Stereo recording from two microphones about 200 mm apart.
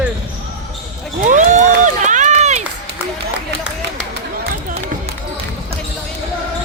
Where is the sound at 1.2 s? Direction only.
40° right (ahead or behind).